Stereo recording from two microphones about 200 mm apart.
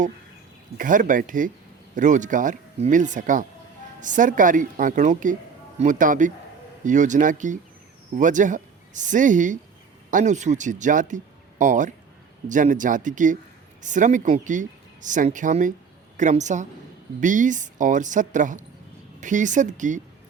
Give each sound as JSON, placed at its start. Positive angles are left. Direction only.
{"t": 0.8, "sound": "speech", "side_deg": -40}